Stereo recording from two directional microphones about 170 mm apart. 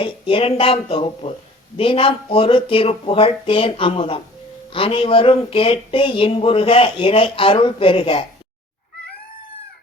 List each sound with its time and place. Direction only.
0.0 s speech: 30° left (ahead or behind)